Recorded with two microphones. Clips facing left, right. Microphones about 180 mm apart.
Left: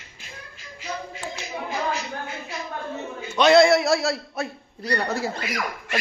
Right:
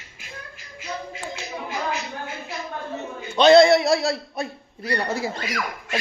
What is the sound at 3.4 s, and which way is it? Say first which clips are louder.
Speech: right 3 dB; 30° right (ahead or behind).